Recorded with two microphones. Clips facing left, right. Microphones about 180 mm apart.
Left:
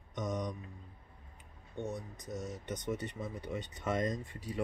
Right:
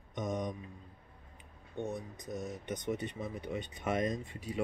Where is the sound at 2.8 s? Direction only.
20° right (ahead or behind).